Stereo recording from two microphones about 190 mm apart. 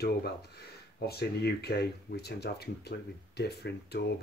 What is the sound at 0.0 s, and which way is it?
Speech, 55° left (ahead or behind).